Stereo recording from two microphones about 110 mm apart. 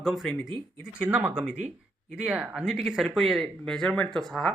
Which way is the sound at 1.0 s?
15° right (ahead or behind).